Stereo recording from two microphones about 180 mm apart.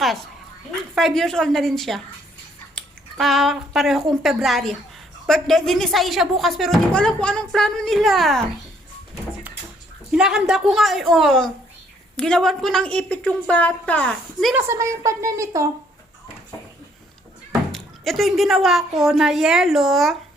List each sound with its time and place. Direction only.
0.9 s speech: centre (ahead or behind)
10.1 s speech: 5° right (ahead or behind)
14.5 s a woman's voice: 15° right (ahead or behind)
17.5 s speech: centre (ahead or behind)